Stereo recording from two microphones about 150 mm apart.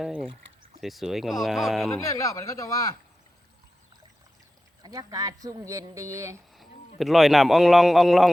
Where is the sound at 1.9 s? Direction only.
20° left (ahead or behind).